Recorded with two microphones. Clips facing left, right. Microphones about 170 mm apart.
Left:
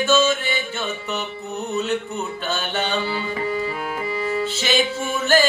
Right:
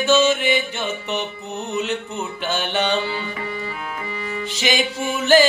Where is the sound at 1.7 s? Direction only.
20° right (ahead or behind).